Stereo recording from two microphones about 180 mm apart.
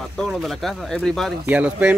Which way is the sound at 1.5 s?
10° right (ahead or behind).